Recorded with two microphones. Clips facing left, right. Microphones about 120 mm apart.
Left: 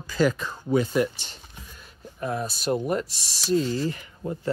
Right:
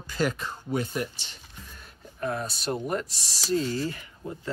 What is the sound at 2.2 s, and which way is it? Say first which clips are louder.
Speech: left 2 dB; 10° left (ahead or behind).